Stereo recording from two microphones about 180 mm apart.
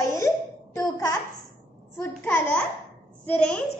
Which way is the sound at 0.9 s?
20° left (ahead or behind).